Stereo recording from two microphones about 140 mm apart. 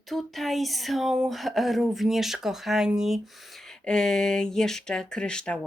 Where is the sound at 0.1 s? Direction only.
Centre (ahead or behind).